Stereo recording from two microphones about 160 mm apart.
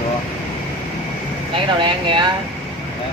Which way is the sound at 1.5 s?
30° right (ahead or behind).